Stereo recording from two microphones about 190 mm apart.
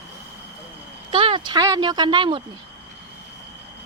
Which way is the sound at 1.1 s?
30° right (ahead or behind).